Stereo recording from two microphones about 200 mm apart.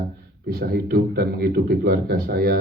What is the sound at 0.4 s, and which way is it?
A man's voice, 50° right (ahead or behind).